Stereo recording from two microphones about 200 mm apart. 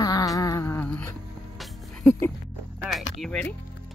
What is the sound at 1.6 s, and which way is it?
Music, 10° left (ahead or behind).